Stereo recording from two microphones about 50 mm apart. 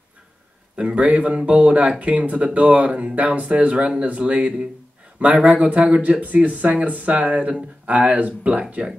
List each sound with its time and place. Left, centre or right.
0.7 s speech: right